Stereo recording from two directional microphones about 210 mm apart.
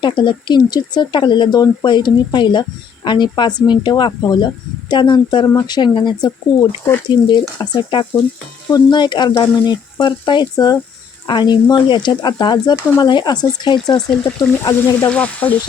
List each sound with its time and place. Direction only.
0.0 s speech: 25° left (ahead or behind); by 15.5 s 5° left (ahead or behind)